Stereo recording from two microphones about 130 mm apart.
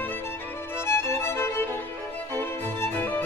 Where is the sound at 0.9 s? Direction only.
20° left (ahead or behind).